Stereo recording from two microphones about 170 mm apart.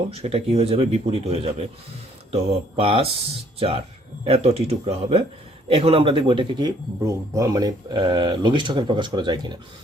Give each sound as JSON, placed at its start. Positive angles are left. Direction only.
{"t": 0.1, "sound": "speech", "side_deg": -35}